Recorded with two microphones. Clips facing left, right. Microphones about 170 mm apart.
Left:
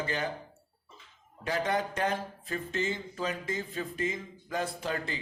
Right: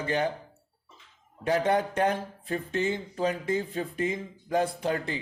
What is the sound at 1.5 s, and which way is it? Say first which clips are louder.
Speech: right 5 dB; 55° right (ahead or behind).